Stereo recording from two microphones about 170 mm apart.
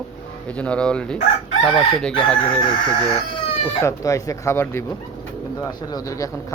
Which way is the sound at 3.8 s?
15° left (ahead or behind).